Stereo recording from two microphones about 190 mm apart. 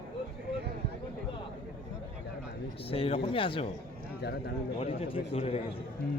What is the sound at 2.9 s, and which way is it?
Speech, 30° left (ahead or behind).